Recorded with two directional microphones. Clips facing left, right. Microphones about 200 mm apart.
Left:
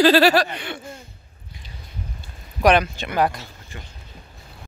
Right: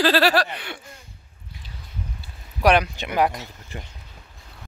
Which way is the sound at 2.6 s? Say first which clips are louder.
Left 1 dB; 10° right (ahead or behind).